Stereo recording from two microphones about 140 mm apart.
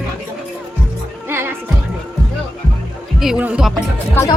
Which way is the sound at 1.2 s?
15° right (ahead or behind).